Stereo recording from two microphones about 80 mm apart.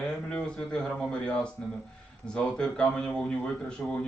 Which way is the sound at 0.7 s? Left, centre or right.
Centre.